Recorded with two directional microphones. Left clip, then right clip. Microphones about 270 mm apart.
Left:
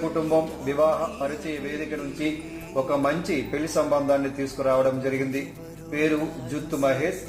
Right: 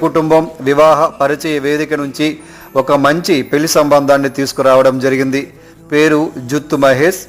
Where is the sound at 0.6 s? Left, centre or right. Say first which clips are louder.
Right 14 dB; right.